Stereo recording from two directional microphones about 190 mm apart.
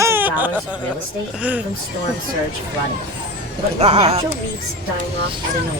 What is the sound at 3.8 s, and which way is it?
Speech, 35° right (ahead or behind).